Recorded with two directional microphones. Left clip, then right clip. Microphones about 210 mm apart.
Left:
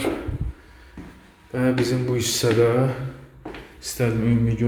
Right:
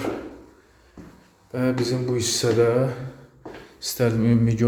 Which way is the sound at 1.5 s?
Centre (ahead or behind).